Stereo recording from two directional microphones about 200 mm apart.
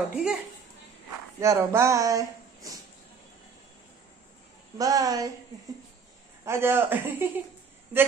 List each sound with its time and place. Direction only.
0.1 s speech: 5° right (ahead or behind)
1.4 s speech: 15° right (ahead or behind)
4.7 s speech: 20° right (ahead or behind)
6.4 s speech: 10° right (ahead or behind)